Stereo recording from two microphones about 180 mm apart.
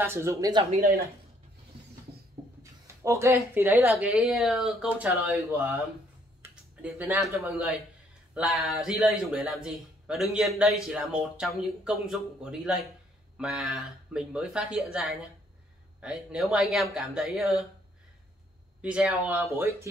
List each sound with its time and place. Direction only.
0.0 s speech: 15° right (ahead or behind)
0.7 s speech: 50° right (ahead or behind)
2.6 s a man's voice: 15° right (ahead or behind)
18.8 s speech: 5° right (ahead or behind)